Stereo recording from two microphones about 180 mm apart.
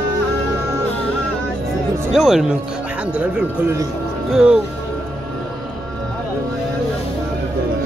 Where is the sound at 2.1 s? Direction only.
Centre (ahead or behind).